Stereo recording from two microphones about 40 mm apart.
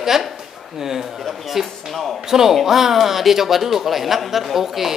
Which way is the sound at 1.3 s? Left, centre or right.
Centre.